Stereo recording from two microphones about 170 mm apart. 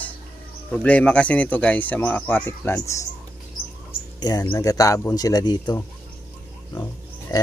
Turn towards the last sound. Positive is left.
turn(degrees=20)  # may be behind; listen again after turning